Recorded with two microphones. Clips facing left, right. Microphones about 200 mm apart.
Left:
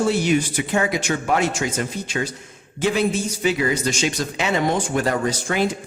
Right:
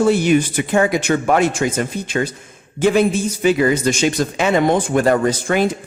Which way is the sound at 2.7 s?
50° right (ahead or behind).